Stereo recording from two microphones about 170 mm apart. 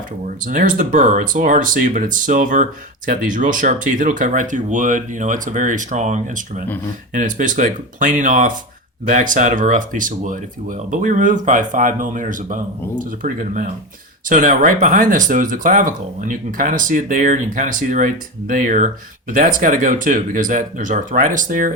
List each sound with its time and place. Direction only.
0.4 s speech: 50° right (ahead or behind)